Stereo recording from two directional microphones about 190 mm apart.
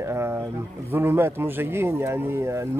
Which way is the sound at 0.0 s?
15° right (ahead or behind).